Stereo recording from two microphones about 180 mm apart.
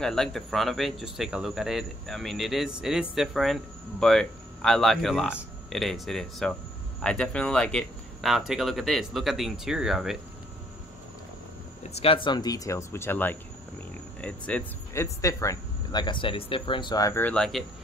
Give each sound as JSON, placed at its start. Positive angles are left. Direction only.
{"t": 0.0, "sound": "speech", "side_deg": 5}
{"t": 11.9, "sound": "speech", "side_deg": 30}